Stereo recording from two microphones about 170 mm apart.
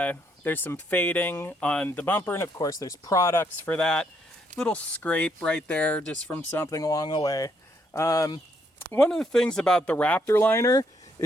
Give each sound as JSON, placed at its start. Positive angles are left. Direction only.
{"t": 0.0, "sound": "speech", "side_deg": 10}
{"t": 3.8, "sound": "speech", "side_deg": 5}
{"t": 8.9, "sound": "speech", "side_deg": 5}